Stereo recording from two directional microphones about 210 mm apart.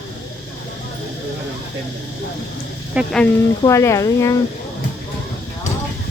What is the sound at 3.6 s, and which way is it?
Speech, 15° left (ahead or behind).